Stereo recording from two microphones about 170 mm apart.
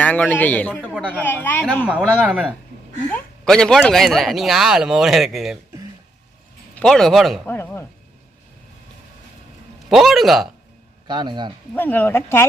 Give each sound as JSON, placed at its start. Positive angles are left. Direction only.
{"t": 0.0, "sound": "a man's voice", "side_deg": 10}
{"t": 1.9, "sound": "speech", "side_deg": -5}
{"t": 3.1, "sound": "speech", "side_deg": 5}
{"t": 6.7, "sound": "speech", "side_deg": 5}
{"t": 7.4, "sound": "a man's voice", "side_deg": 10}
{"t": 9.9, "sound": "speech", "side_deg": 0}
{"t": 11.1, "sound": "a man's voice", "side_deg": -25}
{"t": 11.7, "sound": "a man's voice", "side_deg": 10}